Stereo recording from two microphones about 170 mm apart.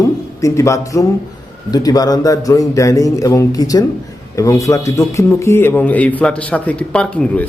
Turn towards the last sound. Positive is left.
turn(degrees=5)  # may be behind; listen again after turning